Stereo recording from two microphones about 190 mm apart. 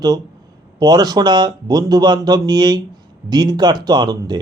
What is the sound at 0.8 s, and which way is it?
A man's voice, 20° right (ahead or behind).